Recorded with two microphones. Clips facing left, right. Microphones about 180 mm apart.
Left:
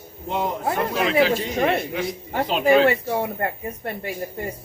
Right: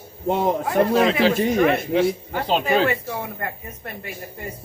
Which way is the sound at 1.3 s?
55° right (ahead or behind).